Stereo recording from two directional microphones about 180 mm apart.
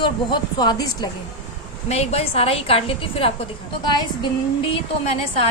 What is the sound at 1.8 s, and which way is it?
A woman's voice, 35° left (ahead or behind).